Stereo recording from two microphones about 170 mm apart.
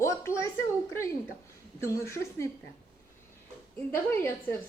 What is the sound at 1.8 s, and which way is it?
Speech, 15° left (ahead or behind).